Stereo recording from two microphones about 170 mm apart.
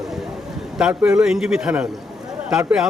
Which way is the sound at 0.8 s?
5° right (ahead or behind).